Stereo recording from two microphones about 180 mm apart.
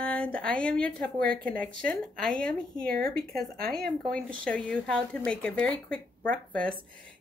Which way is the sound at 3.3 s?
55° right (ahead or behind).